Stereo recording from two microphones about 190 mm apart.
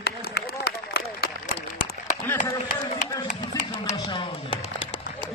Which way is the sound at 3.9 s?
25° left (ahead or behind).